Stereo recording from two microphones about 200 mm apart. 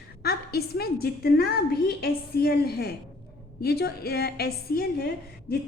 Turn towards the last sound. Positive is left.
turn(degrees=50)  # may be behind; listen again after turning